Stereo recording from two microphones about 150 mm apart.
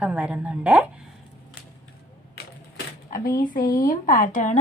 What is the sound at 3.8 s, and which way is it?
Speech, 65° left (ahead or behind).